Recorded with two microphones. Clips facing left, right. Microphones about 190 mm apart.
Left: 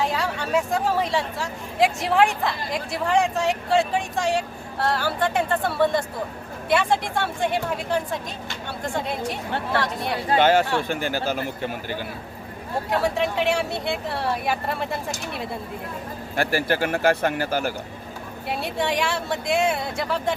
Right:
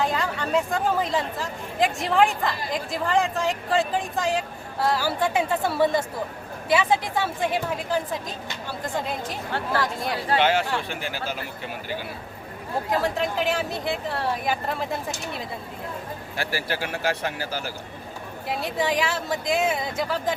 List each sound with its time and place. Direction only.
0.0 s speech: centre (ahead or behind)
9.7 s speech: centre (ahead or behind)
10.3 s a man's voice: 45° left (ahead or behind)
13.0 s speech: centre (ahead or behind)
16.3 s a man's voice: 55° left (ahead or behind)
18.4 s speech: centre (ahead or behind)